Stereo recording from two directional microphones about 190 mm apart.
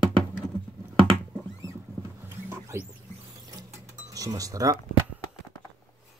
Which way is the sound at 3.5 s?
20° right (ahead or behind).